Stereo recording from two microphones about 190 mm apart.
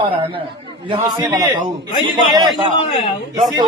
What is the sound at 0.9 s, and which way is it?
Speech, 20° right (ahead or behind).